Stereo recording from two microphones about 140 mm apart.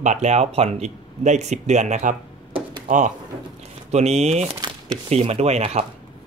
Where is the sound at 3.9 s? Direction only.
50° right (ahead or behind).